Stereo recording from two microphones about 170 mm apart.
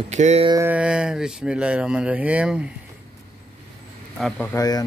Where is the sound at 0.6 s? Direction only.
10° right (ahead or behind).